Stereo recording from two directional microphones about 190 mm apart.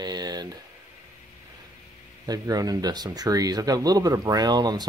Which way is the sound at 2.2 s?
20° right (ahead or behind).